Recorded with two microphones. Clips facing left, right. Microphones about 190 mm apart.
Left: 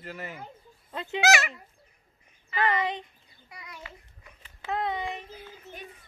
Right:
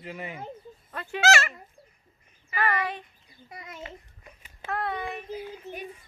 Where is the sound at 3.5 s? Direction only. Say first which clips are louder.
Right 5 dB; 25° right (ahead or behind).